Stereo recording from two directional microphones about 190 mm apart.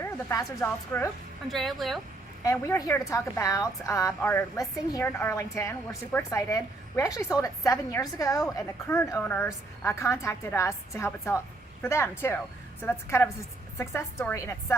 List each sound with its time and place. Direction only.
0.0 s a woman's voice: 10° left (ahead or behind)
1.5 s speech: centre (ahead or behind)
2.4 s a woman's voice: 15° left (ahead or behind)